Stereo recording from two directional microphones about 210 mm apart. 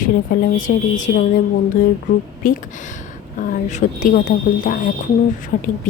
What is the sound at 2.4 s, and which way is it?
Speech, 40° left (ahead or behind).